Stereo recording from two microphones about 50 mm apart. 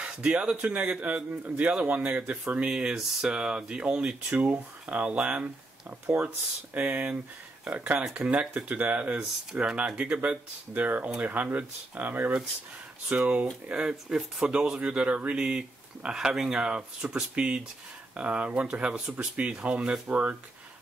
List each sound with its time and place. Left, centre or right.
0.0 s speech: right
4.4 s speech: right
6.0 s speech: right
8.0 s speech: centre
8.3 s speech: right
9.6 s speech: centre
13.7 s speech: centre
20.1 s speech: right